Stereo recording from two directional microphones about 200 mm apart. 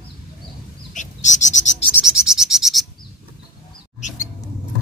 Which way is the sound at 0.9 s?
40° left (ahead or behind).